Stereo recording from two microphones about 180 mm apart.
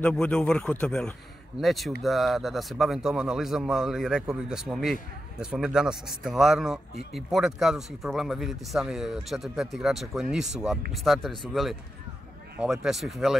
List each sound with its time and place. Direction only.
0.0 s a man's voice: 5° left (ahead or behind)